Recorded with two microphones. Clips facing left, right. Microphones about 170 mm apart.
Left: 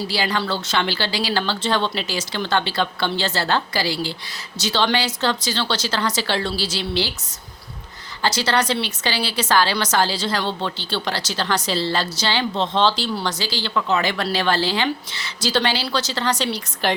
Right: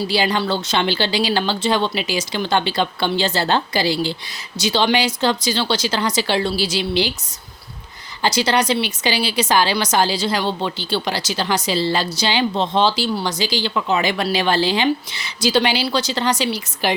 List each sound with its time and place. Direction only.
0.1 s a woman's voice: 20° right (ahead or behind)
8.2 s a woman's voice: 15° right (ahead or behind)